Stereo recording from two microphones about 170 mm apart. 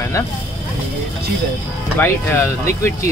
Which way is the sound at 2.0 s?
10° left (ahead or behind).